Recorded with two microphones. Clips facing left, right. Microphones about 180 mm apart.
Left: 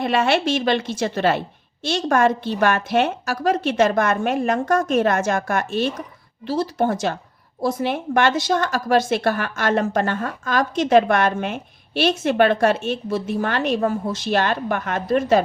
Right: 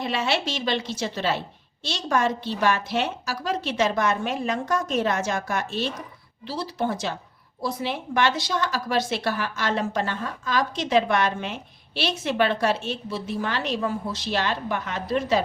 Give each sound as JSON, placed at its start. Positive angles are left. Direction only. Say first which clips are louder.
{"t": 0.0, "sound": "a woman's voice", "louder": "left 7 dB", "side_deg": 55}